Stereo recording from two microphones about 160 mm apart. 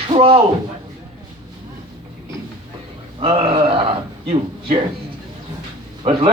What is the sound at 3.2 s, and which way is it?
A man's voice, 35° right (ahead or behind).